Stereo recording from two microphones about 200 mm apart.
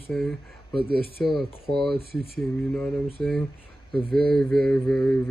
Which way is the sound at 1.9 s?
50° right (ahead or behind).